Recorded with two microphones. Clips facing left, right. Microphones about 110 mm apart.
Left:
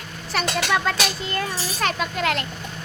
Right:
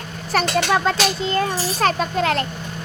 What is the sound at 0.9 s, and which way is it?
A child's voice, 30° right (ahead or behind).